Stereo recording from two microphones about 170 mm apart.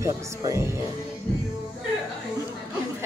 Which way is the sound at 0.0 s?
20° right (ahead or behind).